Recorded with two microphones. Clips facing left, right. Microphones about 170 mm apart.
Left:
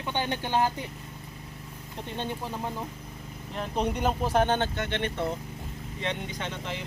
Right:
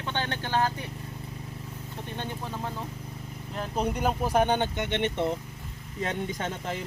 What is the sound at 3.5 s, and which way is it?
Speech, centre (ahead or behind).